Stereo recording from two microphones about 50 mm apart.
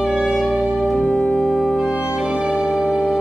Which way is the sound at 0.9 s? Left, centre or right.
Left.